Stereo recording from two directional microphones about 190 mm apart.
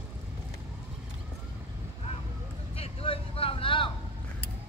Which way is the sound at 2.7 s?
30° left (ahead or behind).